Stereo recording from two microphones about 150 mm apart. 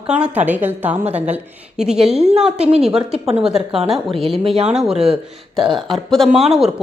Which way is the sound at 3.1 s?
40° right (ahead or behind).